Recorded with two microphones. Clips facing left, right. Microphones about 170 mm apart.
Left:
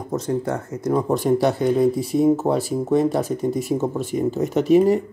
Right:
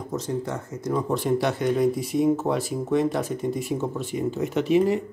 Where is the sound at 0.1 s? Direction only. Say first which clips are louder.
Left 6 dB; 55° left (ahead or behind).